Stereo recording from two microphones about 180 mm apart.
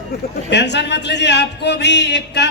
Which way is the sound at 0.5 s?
70° left (ahead or behind).